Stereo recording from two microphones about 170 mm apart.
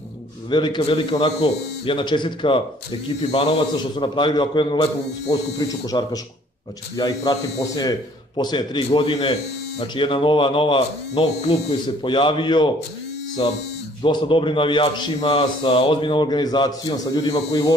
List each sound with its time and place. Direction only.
0.5 s a man's voice: 25° left (ahead or behind)
5.9 s a man's voice: 20° left (ahead or behind)